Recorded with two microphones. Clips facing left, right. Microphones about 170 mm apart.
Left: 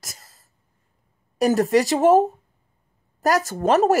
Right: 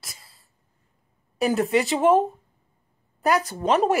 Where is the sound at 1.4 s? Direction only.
40° left (ahead or behind).